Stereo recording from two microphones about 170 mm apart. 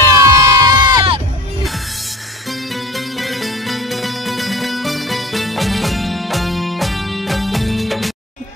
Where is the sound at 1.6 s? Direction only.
Centre (ahead or behind).